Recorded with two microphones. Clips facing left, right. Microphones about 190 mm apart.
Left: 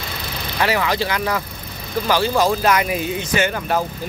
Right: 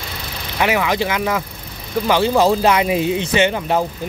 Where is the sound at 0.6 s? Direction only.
15° right (ahead or behind).